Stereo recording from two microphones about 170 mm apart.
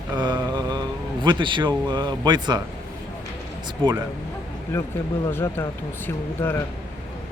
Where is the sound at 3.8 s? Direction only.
25° right (ahead or behind).